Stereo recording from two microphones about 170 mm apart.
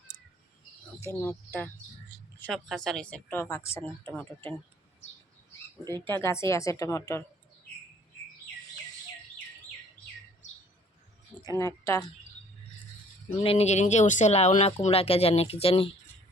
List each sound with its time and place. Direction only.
1.2 s speech: 15° left (ahead or behind)
5.9 s speech: 15° left (ahead or behind)
11.4 s speech: 20° left (ahead or behind)
13.4 s speech: 35° left (ahead or behind)